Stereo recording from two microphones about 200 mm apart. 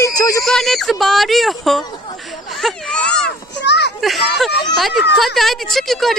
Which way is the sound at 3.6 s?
60° left (ahead or behind).